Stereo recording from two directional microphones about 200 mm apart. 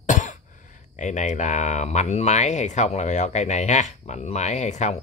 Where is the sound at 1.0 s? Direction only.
35° left (ahead or behind).